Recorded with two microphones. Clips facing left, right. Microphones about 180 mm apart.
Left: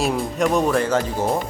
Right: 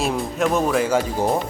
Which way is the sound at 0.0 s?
Centre (ahead or behind).